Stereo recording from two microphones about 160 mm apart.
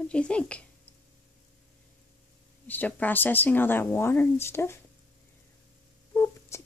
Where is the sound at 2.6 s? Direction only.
10° left (ahead or behind).